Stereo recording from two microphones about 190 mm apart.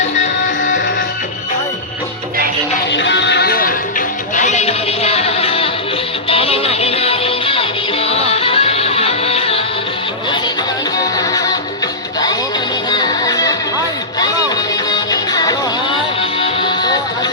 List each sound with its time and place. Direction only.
2.9 s music: 70° left (ahead or behind); by 3.8 s 50° left (ahead or behind)
4.4 s music: 40° left (ahead or behind)
10.9 s music: 20° left (ahead or behind)
12.9 s music: 20° left (ahead or behind)
14.8 s music: 20° left (ahead or behind)